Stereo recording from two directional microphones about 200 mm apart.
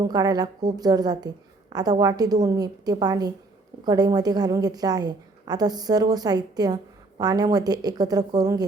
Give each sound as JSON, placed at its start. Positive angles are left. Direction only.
{"t": 0.0, "sound": "a woman's voice", "side_deg": -20}